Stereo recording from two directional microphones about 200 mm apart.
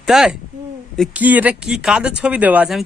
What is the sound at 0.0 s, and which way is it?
Speech, 5° right (ahead or behind).